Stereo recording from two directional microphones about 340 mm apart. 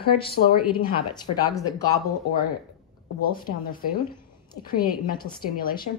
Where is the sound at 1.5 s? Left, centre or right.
Centre.